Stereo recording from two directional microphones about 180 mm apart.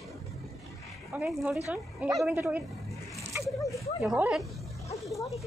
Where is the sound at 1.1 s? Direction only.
5° right (ahead or behind).